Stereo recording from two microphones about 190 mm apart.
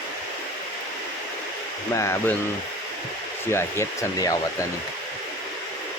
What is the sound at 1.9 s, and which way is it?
Speech, 15° left (ahead or behind).